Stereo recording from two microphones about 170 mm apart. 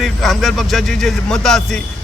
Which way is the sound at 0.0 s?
Centre (ahead or behind).